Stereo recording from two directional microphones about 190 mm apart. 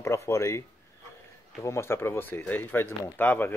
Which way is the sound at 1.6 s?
15° left (ahead or behind).